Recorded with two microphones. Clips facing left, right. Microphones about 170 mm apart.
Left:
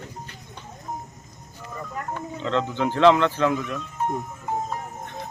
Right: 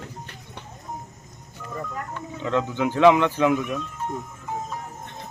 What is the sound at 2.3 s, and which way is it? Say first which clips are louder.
Speech: right 1 dB; 10° right (ahead or behind).